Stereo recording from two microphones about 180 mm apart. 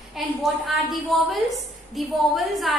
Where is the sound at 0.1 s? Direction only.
Centre (ahead or behind).